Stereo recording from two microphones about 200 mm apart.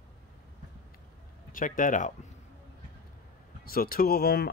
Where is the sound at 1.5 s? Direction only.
45° left (ahead or behind).